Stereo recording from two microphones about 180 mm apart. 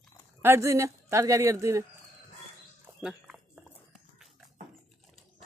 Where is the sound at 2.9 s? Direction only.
Centre (ahead or behind).